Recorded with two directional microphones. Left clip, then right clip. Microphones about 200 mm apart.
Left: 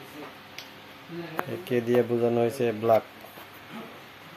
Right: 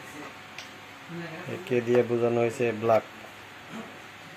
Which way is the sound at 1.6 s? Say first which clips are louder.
Right 1 dB; 15° left (ahead or behind).